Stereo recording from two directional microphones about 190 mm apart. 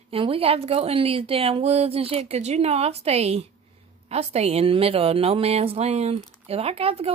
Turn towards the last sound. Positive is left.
turn(degrees=-30)  # may be behind; listen again after turning